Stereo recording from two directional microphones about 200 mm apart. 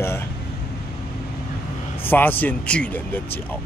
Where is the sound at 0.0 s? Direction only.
10° left (ahead or behind).